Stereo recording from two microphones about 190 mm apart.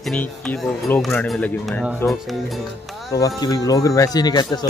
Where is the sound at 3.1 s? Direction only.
20° left (ahead or behind).